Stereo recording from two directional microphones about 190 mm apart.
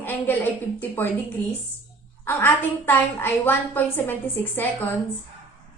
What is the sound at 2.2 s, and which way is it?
A woman's voice, 10° left (ahead or behind).